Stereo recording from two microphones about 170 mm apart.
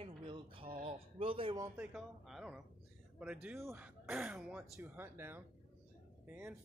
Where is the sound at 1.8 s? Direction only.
Centre (ahead or behind).